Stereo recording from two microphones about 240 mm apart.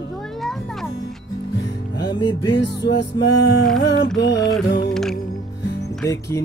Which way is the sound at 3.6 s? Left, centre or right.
Centre.